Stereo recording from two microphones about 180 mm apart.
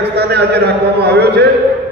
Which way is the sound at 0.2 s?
65° right (ahead or behind).